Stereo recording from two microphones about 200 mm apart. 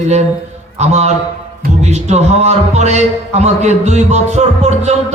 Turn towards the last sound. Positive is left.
turn(degrees=-35)  # may be behind; listen again after turning